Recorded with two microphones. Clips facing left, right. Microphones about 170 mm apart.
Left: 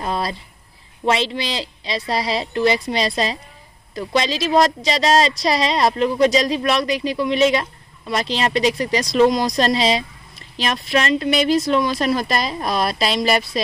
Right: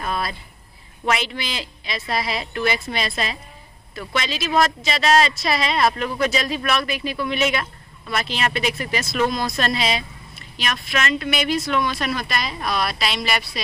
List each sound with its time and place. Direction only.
0.0 s a woman's voice: 30° left (ahead or behind)